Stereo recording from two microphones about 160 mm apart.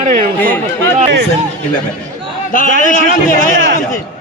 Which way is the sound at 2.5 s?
55° left (ahead or behind).